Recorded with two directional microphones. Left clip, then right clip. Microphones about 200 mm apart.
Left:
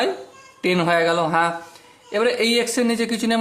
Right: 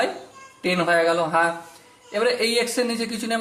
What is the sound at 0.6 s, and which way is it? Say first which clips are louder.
Speech: left 1 dB; 40° left (ahead or behind).